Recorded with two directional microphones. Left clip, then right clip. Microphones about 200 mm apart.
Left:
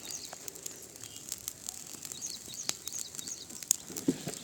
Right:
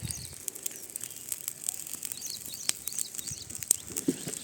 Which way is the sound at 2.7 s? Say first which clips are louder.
Right 4 dB; 10° right (ahead or behind).